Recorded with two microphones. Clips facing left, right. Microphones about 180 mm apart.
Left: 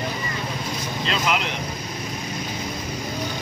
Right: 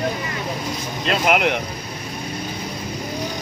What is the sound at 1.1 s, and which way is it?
Speech, 60° right (ahead or behind).